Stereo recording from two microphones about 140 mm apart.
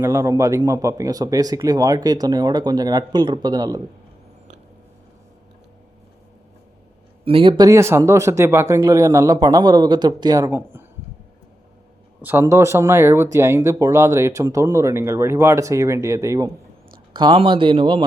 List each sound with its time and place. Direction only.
0.0 s speech: 20° right (ahead or behind)
7.3 s speech: 40° right (ahead or behind); by 10.8 s 15° right (ahead or behind)
12.2 s speech: 15° right (ahead or behind)
17.2 s speech: 35° right (ahead or behind)